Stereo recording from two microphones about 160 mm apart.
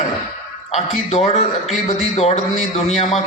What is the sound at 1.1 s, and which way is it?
A man's voice, 45° left (ahead or behind).